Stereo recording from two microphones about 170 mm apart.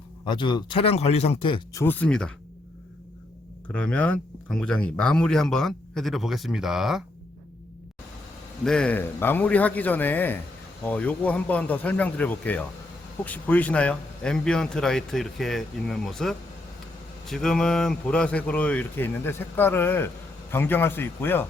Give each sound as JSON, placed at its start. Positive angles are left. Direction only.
{"t": 0.3, "sound": "speech", "side_deg": 25}
{"t": 1.7, "sound": "a man's voice", "side_deg": 10}
{"t": 3.7, "sound": "speech", "side_deg": 10}
{"t": 8.6, "sound": "a man's voice", "side_deg": 5}